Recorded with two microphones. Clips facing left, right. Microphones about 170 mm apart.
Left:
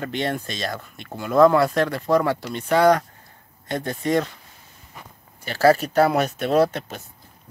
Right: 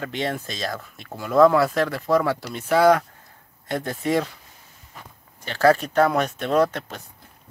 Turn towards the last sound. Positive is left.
turn(degrees=30)  # may be behind; listen again after turning